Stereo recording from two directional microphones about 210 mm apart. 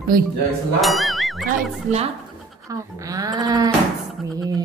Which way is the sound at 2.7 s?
15° right (ahead or behind).